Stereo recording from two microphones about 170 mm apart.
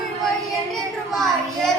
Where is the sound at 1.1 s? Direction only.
Centre (ahead or behind).